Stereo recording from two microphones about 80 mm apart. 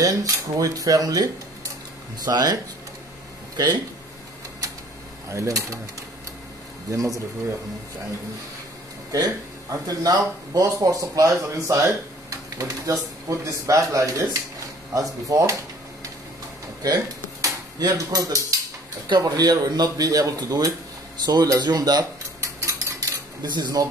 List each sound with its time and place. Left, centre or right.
0.0 s speech: right
5.3 s speech: right
6.9 s speech: right
9.1 s speech: right
16.8 s a sound: right
17.9 s speech: right
21.3 s cutlery: right
23.4 s speech: right